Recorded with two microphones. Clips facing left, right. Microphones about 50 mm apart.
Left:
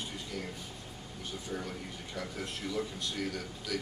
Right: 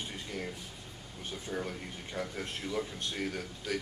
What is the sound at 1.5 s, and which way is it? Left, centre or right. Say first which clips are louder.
A man's voice: right 3 dB; right.